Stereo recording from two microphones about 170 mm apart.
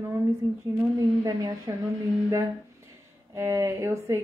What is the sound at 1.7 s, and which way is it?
Speech, 20° right (ahead or behind).